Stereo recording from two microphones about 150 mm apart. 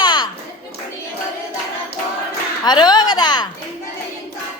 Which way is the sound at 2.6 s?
30° left (ahead or behind).